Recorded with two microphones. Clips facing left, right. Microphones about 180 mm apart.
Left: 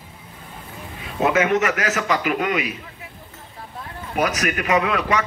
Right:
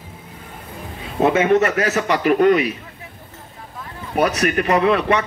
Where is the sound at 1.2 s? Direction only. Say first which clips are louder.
Right 4 dB; 30° right (ahead or behind).